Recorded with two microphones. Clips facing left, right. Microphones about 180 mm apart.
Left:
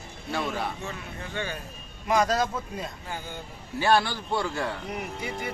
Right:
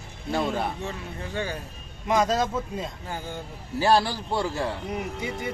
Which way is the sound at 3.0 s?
40° right (ahead or behind).